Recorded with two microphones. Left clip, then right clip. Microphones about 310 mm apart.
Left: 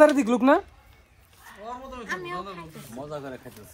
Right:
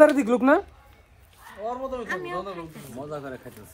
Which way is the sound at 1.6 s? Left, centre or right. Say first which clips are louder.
Right 7 dB; right.